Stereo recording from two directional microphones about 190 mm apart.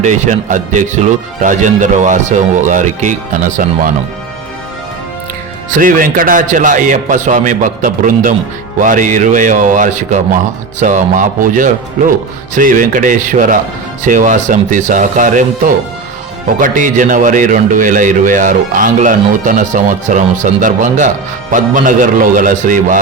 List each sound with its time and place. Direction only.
0.0 s speech: 40° right (ahead or behind)
5.7 s speech: 45° right (ahead or behind)